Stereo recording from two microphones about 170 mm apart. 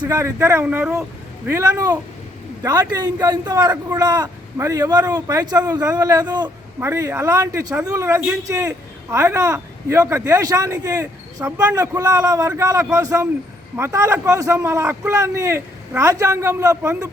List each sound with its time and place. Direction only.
0.0 s a man's voice: 15° right (ahead or behind)